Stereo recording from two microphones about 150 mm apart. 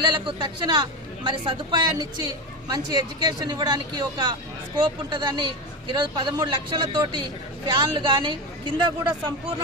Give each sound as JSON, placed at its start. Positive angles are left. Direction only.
{"t": 0.0, "sound": "speech", "side_deg": -30}